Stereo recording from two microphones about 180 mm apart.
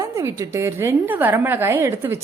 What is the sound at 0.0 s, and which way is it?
A woman's voice, 15° right (ahead or behind).